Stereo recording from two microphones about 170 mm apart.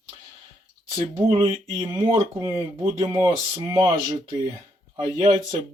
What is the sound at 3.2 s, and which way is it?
Speech, 25° right (ahead or behind).